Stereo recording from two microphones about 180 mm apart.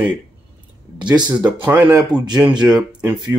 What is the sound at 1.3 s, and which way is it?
Speech, 10° right (ahead or behind).